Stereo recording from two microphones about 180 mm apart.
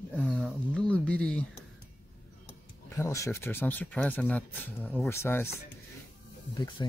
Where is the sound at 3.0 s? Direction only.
15° left (ahead or behind).